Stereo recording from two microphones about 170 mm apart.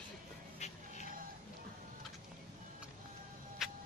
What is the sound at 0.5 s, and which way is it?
Dog, 40° left (ahead or behind).